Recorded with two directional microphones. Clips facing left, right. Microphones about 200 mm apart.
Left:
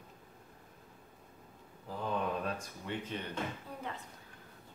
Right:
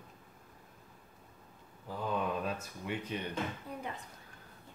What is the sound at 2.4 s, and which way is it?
Speech, 10° right (ahead or behind).